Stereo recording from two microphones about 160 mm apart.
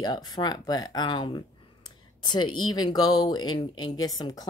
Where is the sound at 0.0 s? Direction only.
25° left (ahead or behind).